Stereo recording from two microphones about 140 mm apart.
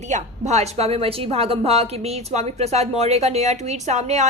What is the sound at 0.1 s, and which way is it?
A woman's voice, 55° right (ahead or behind).